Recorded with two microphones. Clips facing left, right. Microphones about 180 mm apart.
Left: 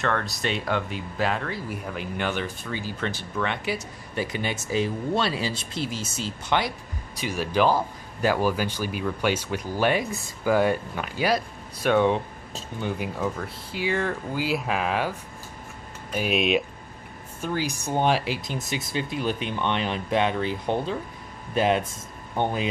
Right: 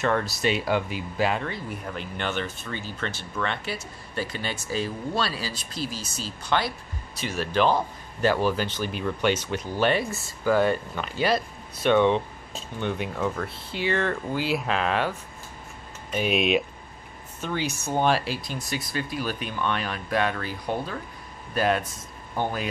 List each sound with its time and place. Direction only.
0.0 s speech: 5° right (ahead or behind); by 22.7 s 20° left (ahead or behind)